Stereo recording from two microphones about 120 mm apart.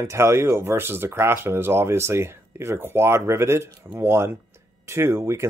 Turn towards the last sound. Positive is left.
turn(degrees=-20)  # may be behind; listen again after turning